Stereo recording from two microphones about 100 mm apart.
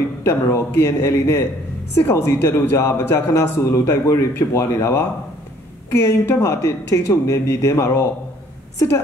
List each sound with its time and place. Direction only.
0.2 s a man's voice: 25° left (ahead or behind)